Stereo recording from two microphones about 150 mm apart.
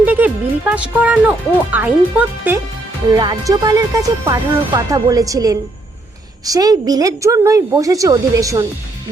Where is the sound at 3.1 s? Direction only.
30° right (ahead or behind).